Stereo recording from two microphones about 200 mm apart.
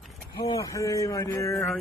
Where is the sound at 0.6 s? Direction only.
15° left (ahead or behind).